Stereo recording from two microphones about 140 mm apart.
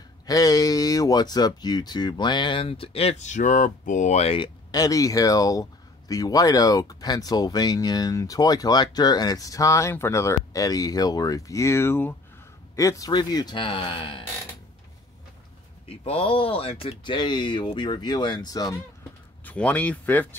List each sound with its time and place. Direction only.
0.3 s speech: 25° left (ahead or behind); by 4.5 s 45° left (ahead or behind)
4.6 s speech: 25° left (ahead or behind)
15.9 s speech: 45° left (ahead or behind); by 18.8 s 30° left (ahead or behind)
19.4 s speech: 10° left (ahead or behind)